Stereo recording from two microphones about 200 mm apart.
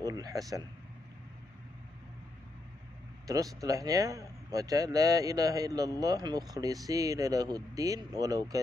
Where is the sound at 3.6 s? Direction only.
15° right (ahead or behind).